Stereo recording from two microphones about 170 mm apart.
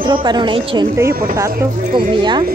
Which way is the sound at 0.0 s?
25° right (ahead or behind).